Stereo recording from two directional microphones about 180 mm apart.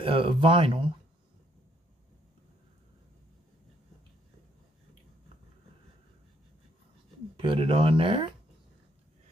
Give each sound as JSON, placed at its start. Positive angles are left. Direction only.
{"t": 0.0, "sound": "speech", "side_deg": -30}
{"t": 7.3, "sound": "speech", "side_deg": -30}